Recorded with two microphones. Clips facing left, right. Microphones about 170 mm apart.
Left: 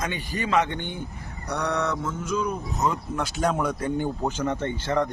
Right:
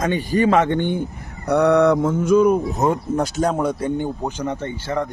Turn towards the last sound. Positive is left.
turn(degrees=-10)  # may be behind; listen again after turning